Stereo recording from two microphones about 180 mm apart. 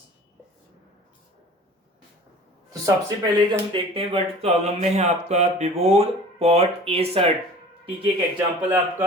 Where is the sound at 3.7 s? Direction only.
30° right (ahead or behind).